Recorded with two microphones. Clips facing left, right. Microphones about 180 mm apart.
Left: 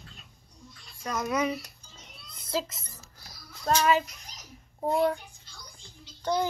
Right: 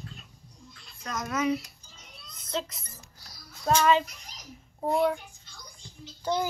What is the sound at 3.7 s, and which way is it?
Speech, 5° right (ahead or behind).